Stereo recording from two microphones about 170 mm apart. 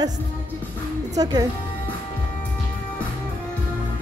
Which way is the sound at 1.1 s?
20° right (ahead or behind).